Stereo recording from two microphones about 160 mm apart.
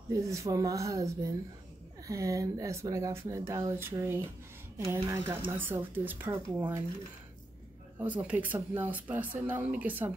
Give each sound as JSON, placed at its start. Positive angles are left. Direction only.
{"t": 0.1, "sound": "speech", "side_deg": -20}
{"t": 8.0, "sound": "speech", "side_deg": -10}